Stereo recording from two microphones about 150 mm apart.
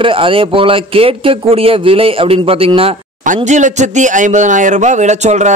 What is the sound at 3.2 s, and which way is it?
Speech, 55° right (ahead or behind).